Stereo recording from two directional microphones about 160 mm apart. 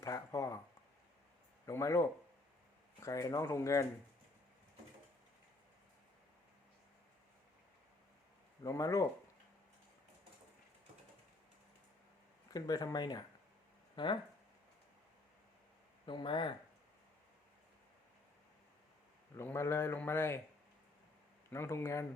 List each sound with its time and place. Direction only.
0.0 s a sound: 20° left (ahead or behind)
1.6 s a sound: 20° left (ahead or behind)
3.0 s speech: 20° left (ahead or behind)
8.6 s speech: 20° left (ahead or behind)
12.5 s speech: 25° left (ahead or behind)
16.0 s speech: 30° left (ahead or behind)
19.4 s a man's voice: 15° left (ahead or behind)
21.5 s a man's voice: 15° left (ahead or behind)